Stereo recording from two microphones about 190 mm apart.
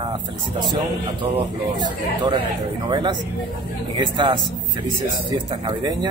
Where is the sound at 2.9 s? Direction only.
25° right (ahead or behind).